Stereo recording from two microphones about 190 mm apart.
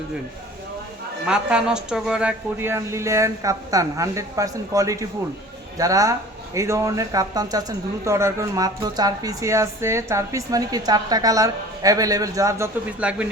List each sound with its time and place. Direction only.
1.3 s a woman's voice: 5° right (ahead or behind)